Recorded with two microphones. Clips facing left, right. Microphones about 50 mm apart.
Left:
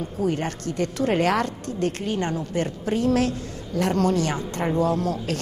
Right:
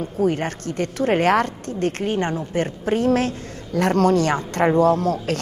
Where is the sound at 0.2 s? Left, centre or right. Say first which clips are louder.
Right 4 dB; right.